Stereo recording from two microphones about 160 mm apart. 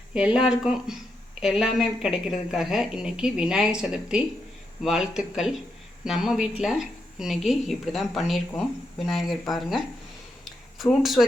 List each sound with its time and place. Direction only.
0.1 s a woman's voice: 5° right (ahead or behind)
11.0 s a woman's voice: centre (ahead or behind)